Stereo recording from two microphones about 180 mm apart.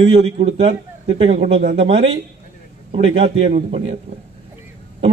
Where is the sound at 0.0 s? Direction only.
30° right (ahead or behind).